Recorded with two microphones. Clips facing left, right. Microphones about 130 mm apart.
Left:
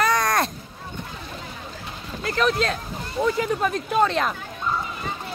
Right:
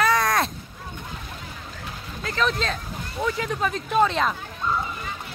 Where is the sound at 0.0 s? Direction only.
Centre (ahead or behind).